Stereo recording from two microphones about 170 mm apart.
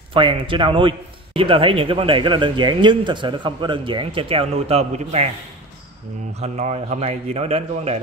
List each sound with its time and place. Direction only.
0.1 s a man's voice: 30° right (ahead or behind)
6.3 s a man's voice: 40° right (ahead or behind)